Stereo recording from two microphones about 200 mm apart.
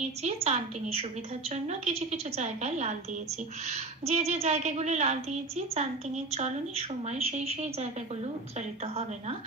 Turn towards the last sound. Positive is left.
turn(degrees=-30)  # may be behind; listen again after turning